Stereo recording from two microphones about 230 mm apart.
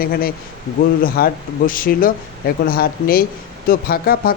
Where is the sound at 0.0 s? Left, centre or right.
Left.